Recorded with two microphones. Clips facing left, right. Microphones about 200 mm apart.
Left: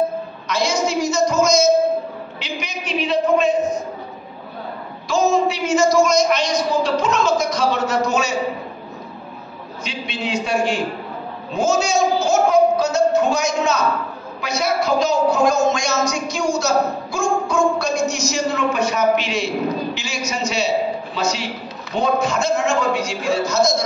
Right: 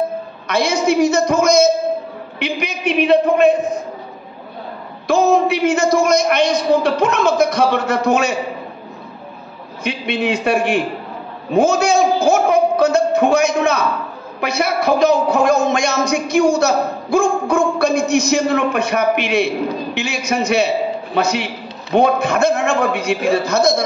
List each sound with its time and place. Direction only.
0.5 s a woman's voice: 60° right (ahead or behind)
2.3 s a sound: 60° right (ahead or behind)
5.0 s a man's voice: 60° right (ahead or behind)
9.8 s a man's voice: 60° right (ahead or behind)